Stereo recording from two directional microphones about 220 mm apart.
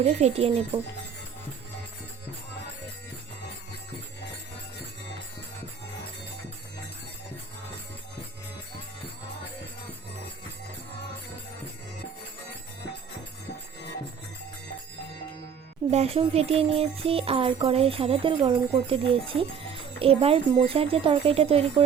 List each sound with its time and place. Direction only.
0.0 s music: 30° right (ahead or behind)
15.9 s music: 30° right (ahead or behind)